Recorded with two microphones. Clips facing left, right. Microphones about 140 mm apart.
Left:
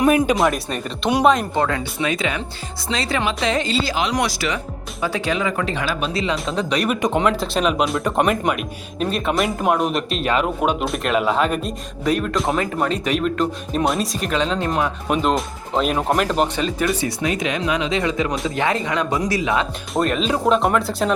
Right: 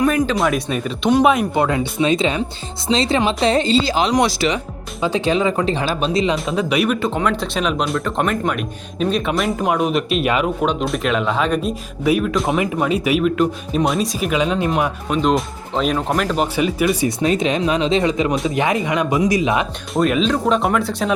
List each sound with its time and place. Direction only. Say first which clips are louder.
0.3 s speech: right 1 dB; centre (ahead or behind); by 6.3 s 25° right (ahead or behind)
6.3 s speech: right 3 dB; centre (ahead or behind)
7.0 s speech: left 1 dB; 15° left (ahead or behind)
7.3 s speech: left 1 dB; centre (ahead or behind)
10.4 s speech: right 1 dB; 5° left (ahead or behind); by 14.8 s 10° right (ahead or behind)
15.1 s speech: right 2 dB; centre (ahead or behind)
16.6 s speech: right 4 dB; 10° right (ahead or behind)
17.1 s speech: right 4 dB; 25° right (ahead or behind)
19.9 s speech: right 3 dB; centre (ahead or behind)